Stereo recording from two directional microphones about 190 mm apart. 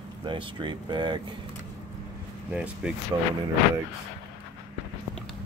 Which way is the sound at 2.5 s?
5° right (ahead or behind).